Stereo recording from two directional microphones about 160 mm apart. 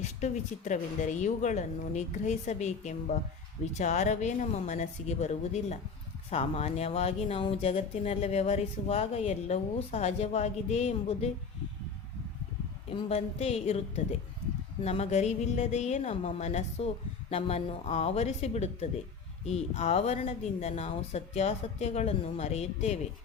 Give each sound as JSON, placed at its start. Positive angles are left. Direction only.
{"t": 0.0, "sound": "a woman's voice", "side_deg": 45}
{"t": 12.9, "sound": "a woman's voice", "side_deg": 35}